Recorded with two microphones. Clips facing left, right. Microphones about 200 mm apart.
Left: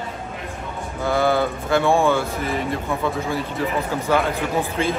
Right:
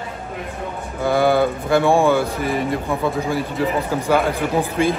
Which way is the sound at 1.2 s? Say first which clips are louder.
Right 4 dB; 15° right (ahead or behind).